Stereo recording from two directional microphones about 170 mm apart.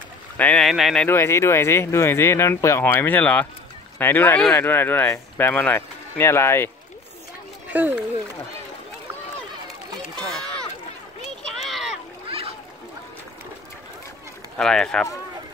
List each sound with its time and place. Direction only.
0.4 s speech: 5° left (ahead or behind)
1.0 s speech: 15° left (ahead or behind)
7.7 s speech: 10° right (ahead or behind)
10.2 s a sound: 5° left (ahead or behind)
12.3 s boat: 35° right (ahead or behind)
14.6 s speech: 5° left (ahead or behind)